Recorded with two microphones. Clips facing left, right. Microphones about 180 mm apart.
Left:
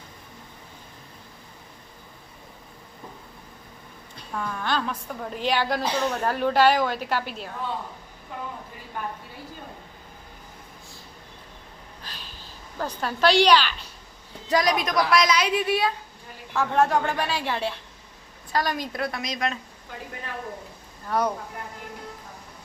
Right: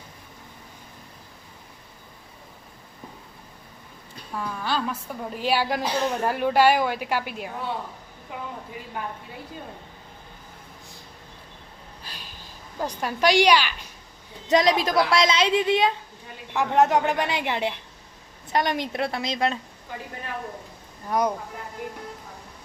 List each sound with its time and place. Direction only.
4.3 s a woman's voice: 5° right (ahead or behind)
12.1 s a sound: 10° right (ahead or behind)
12.8 s a woman's voice: 15° right (ahead or behind)
14.4 s a woman's voice: 25° right (ahead or behind)
21.1 s a woman's voice: 10° right (ahead or behind)